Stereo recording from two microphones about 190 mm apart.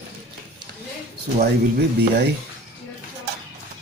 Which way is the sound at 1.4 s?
55° right (ahead or behind).